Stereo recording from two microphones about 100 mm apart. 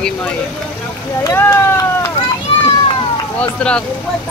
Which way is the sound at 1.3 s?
25° left (ahead or behind).